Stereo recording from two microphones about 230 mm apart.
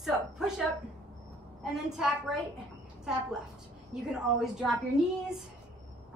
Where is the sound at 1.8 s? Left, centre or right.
Centre.